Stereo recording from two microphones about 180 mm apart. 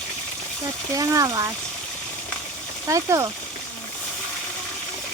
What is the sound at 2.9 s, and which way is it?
Speech, 20° right (ahead or behind).